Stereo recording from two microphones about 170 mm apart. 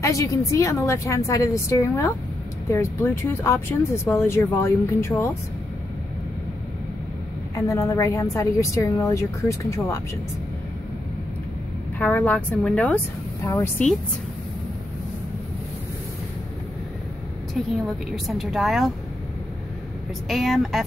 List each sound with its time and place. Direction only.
0.0 s a woman's voice: 20° left (ahead or behind)
7.5 s a woman's voice: 20° left (ahead or behind)
12.0 s a woman's voice: 10° left (ahead or behind)
17.6 s speech: centre (ahead or behind)
20.2 s speech: centre (ahead or behind)